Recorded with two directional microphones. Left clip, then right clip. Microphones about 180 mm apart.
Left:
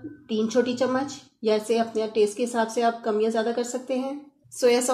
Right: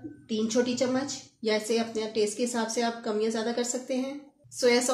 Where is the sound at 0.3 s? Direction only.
30° left (ahead or behind).